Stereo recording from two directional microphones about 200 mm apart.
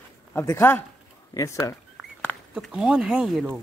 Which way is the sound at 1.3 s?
15° left (ahead or behind).